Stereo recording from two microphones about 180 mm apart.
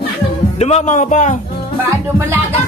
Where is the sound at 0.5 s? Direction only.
40° left (ahead or behind).